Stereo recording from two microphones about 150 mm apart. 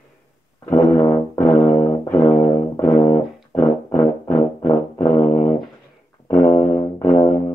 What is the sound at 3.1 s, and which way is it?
Music, 20° left (ahead or behind).